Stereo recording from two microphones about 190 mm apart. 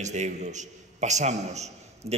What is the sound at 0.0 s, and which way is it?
A man's voice, 40° right (ahead or behind).